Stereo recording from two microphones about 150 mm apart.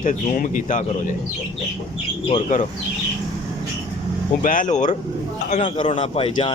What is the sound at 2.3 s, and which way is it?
Speech, 55° left (ahead or behind).